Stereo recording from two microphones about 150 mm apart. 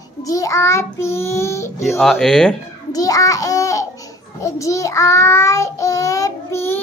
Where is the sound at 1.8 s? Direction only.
Centre (ahead or behind).